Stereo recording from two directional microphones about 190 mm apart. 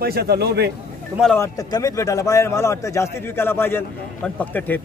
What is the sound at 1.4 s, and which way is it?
A man's voice, 20° left (ahead or behind).